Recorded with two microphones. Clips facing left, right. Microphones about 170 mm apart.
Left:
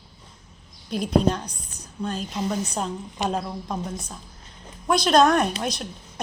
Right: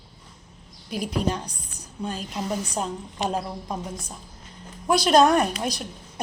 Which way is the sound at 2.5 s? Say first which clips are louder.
Even; 10° right (ahead or behind).